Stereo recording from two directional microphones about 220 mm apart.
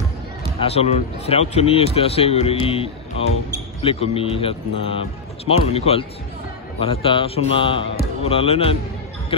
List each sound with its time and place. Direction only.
0.6 s speech: 30° left (ahead or behind)